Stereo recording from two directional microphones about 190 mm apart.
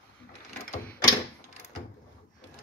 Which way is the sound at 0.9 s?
15° left (ahead or behind).